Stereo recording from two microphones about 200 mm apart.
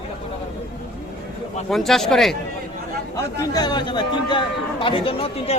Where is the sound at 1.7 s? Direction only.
Centre (ahead or behind).